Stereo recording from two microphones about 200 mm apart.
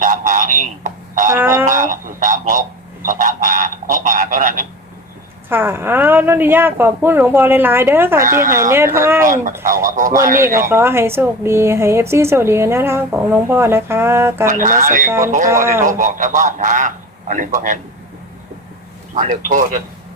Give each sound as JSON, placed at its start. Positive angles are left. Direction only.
{"t": 0.0, "sound": "a sound", "side_deg": -40}
{"t": 1.3, "sound": "a sound", "side_deg": -10}
{"t": 1.7, "sound": "a sound", "side_deg": -40}
{"t": 5.5, "sound": "speech", "side_deg": -10}
{"t": 8.2, "sound": "a man's voice", "side_deg": -40}
{"t": 9.0, "sound": "a woman's voice", "side_deg": -10}
{"t": 9.2, "sound": "a man's voice", "side_deg": -40}
{"t": 10.7, "sound": "a woman's voice", "side_deg": -10}
{"t": 14.4, "sound": "a man's voice", "side_deg": -40}
{"t": 15.4, "sound": "a woman's voice", "side_deg": -15}
{"t": 16.0, "sound": "a man's voice", "side_deg": -40}
{"t": 19.1, "sound": "a man's voice", "side_deg": -40}